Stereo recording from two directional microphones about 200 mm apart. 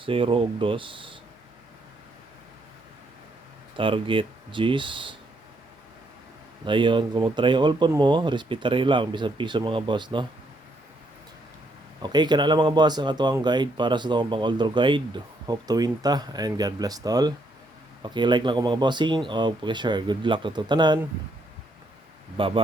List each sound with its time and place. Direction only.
0.0 s speech: 25° right (ahead or behind)
3.8 s speech: 25° right (ahead or behind)
6.7 s speech: 25° right (ahead or behind)
12.0 s speech: 20° right (ahead or behind)
22.4 s speech: 25° right (ahead or behind)